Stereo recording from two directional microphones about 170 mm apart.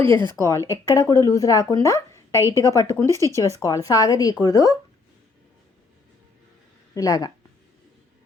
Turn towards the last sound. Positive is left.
turn(degrees=20)  # may be behind; listen again after turning